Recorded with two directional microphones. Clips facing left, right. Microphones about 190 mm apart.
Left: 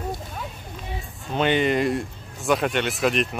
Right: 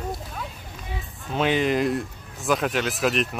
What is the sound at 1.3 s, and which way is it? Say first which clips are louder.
Speech: left 1 dB; centre (ahead or behind).